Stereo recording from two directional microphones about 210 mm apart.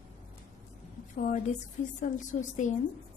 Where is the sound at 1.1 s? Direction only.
35° left (ahead or behind).